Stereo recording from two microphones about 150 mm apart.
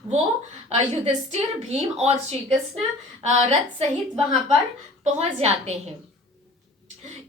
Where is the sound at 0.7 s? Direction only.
50° right (ahead or behind).